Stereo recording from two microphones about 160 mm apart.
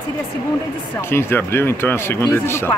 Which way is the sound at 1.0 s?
15° left (ahead or behind).